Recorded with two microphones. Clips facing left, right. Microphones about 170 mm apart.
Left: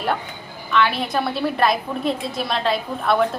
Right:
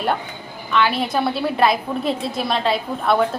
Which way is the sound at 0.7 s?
Centre (ahead or behind).